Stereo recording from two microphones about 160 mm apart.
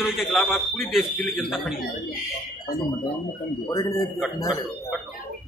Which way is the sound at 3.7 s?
20° left (ahead or behind).